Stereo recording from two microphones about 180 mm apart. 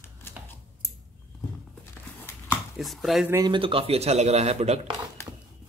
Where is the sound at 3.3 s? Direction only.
25° right (ahead or behind).